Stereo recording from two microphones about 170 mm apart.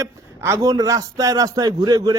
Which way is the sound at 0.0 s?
15° right (ahead or behind).